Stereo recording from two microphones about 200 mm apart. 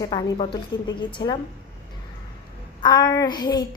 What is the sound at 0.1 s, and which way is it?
A woman's voice, 25° left (ahead or behind).